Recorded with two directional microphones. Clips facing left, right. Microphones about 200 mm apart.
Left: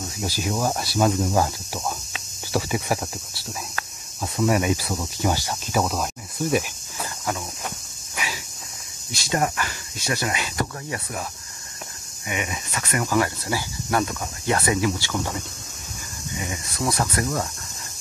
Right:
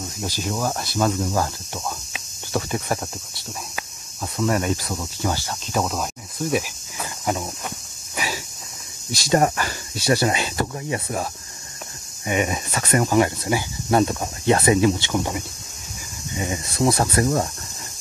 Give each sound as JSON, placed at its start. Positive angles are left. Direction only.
{"t": 0.2, "sound": "speech", "side_deg": 10}
{"t": 6.5, "sound": "cricket", "side_deg": 0}
{"t": 9.1, "sound": "speech", "side_deg": -40}
{"t": 12.3, "sound": "speech", "side_deg": -35}
{"t": 13.2, "sound": "speech", "side_deg": -20}
{"t": 16.3, "sound": "speech", "side_deg": -30}